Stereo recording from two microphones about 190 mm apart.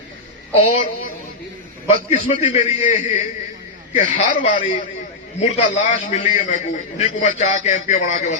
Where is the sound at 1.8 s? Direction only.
35° left (ahead or behind).